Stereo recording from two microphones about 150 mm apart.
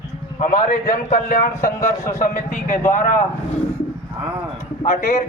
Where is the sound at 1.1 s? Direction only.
55° left (ahead or behind).